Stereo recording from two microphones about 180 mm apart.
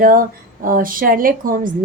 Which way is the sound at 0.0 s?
50° right (ahead or behind).